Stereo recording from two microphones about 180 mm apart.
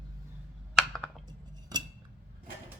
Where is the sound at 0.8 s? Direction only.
Centre (ahead or behind).